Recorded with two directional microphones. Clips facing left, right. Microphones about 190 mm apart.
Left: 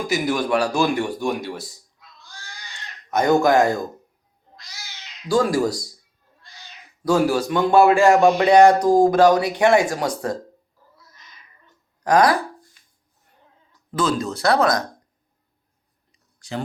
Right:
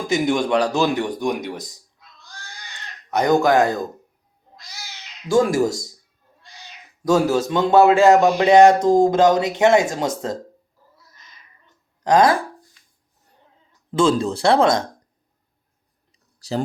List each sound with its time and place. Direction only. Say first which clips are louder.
0.1 s a man's voice: right 4 dB; 25° right (ahead or behind)
0.4 s a man's voice: right 2 dB; 10° left (ahead or behind)
0.7 s a man's voice: right 1 dB; 20° right (ahead or behind)
3.1 s speech: even; 15° right (ahead or behind)
5.3 s a man's voice: right 2 dB; 20° right (ahead or behind)
7.0 s a man's voice: right 1 dB; 20° right (ahead or behind)
12.0 s a man's voice: right 1 dB; 25° right (ahead or behind)
13.9 s a man's voice: right 5 dB; 30° right (ahead or behind)
16.4 s speech: right 5 dB; 35° right (ahead or behind)